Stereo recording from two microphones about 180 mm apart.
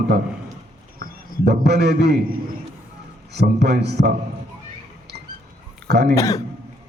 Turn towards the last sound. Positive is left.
turn(degrees=20)  # may be behind; listen again after turning